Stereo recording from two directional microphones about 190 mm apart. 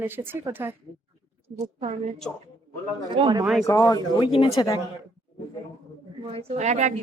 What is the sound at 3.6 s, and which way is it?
Speech, 15° left (ahead or behind).